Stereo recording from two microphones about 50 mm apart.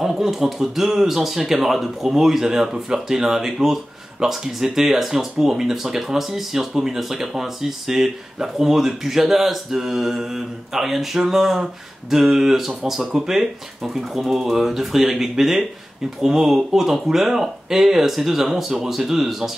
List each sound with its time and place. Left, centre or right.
0.0 s speech: centre